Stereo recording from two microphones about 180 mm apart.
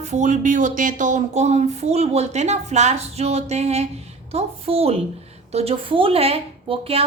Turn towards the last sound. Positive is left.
turn(degrees=-30)  # may be behind; listen again after turning